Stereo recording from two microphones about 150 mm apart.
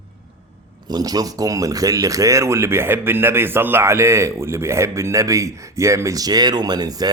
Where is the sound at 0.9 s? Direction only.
25° right (ahead or behind).